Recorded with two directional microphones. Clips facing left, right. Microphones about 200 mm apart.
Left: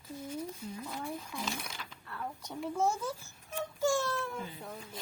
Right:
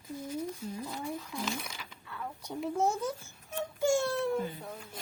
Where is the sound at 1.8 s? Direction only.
Centre (ahead or behind).